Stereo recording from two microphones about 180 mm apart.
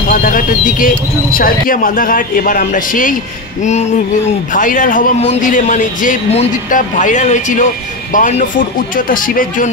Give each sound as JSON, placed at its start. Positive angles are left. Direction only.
{"t": 0.1, "sound": "speech", "side_deg": 50}
{"t": 4.5, "sound": "speech", "side_deg": 45}